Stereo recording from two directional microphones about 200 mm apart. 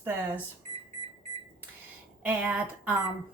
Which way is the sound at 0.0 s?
10° right (ahead or behind).